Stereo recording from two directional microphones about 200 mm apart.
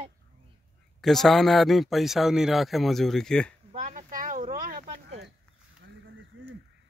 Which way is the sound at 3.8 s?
40° right (ahead or behind).